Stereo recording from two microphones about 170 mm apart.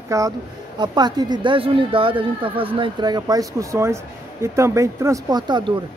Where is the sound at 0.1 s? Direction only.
20° right (ahead or behind).